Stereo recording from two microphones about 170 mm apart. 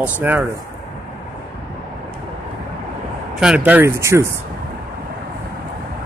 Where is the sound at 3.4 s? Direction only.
5° right (ahead or behind).